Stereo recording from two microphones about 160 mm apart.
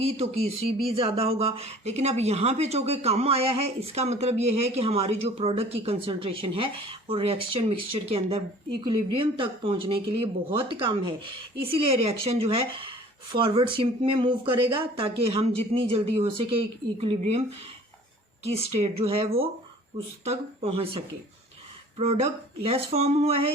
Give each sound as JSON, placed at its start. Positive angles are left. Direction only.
{"t": 0.0, "sound": "speech", "side_deg": -40}
{"t": 18.4, "sound": "speech", "side_deg": -40}